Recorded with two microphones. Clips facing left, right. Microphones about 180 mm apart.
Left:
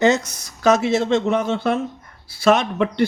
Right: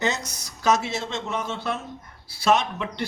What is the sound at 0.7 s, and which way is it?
A man's voice, 55° left (ahead or behind).